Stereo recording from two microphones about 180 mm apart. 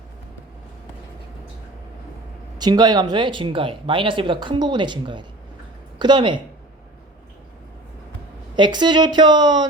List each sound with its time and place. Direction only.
2.6 s speech: 20° right (ahead or behind)
8.5 s speech: 25° right (ahead or behind)